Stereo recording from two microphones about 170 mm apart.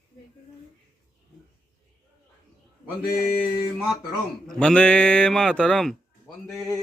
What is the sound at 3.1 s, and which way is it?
Mantra, 60° left (ahead or behind).